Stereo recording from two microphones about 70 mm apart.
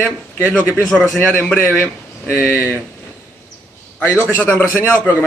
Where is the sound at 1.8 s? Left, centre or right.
Left.